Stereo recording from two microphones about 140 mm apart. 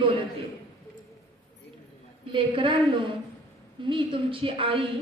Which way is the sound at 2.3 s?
35° right (ahead or behind).